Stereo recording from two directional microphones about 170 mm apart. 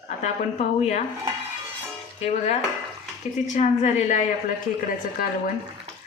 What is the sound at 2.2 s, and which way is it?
A woman's voice, 40° left (ahead or behind).